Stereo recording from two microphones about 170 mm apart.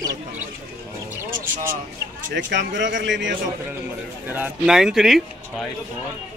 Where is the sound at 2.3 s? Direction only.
90° right.